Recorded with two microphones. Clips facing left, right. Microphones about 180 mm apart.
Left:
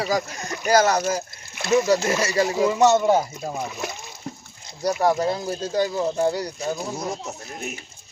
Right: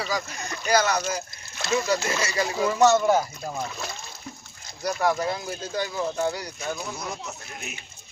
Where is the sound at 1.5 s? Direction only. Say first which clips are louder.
Left 6 dB; 15° left (ahead or behind).